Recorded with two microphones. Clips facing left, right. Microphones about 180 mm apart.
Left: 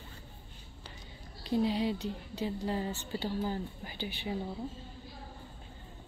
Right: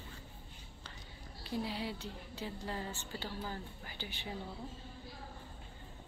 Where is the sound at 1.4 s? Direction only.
20° left (ahead or behind).